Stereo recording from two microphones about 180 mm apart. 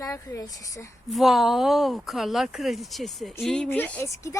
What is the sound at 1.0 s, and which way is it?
A woman's voice, centre (ahead or behind).